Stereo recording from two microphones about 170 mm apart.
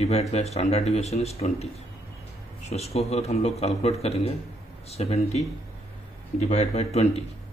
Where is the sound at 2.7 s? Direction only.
40° left (ahead or behind).